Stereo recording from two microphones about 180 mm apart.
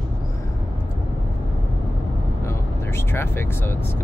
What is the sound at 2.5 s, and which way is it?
Vehicle, 15° left (ahead or behind).